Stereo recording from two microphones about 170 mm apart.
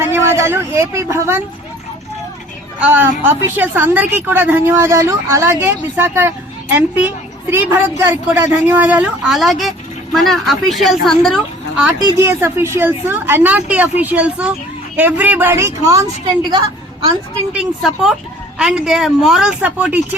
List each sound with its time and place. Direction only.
0.0 s a sound: 15° right (ahead or behind)
2.8 s a woman's voice: 10° right (ahead or behind)
11.9 s a woman's voice: 20° right (ahead or behind)
17.5 s a woman's voice: 5° right (ahead or behind)